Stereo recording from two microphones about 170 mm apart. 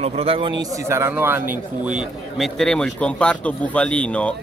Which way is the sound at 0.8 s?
15° right (ahead or behind).